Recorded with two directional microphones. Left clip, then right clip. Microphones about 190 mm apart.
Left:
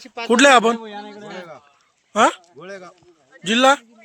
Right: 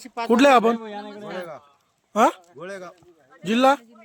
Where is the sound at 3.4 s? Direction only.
5° right (ahead or behind).